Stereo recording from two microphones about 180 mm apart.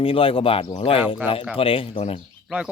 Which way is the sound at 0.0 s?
30° left (ahead or behind).